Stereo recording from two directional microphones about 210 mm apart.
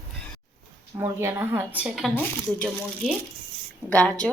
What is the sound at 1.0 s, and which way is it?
Speech, 10° right (ahead or behind).